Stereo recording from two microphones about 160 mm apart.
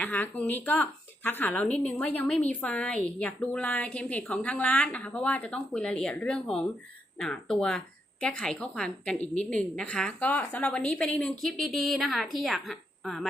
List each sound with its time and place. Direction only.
0.0 s a woman's voice: 10° left (ahead or behind)
9.2 s a woman's voice: 45° left (ahead or behind)
9.5 s a woman's voice: 5° left (ahead or behind)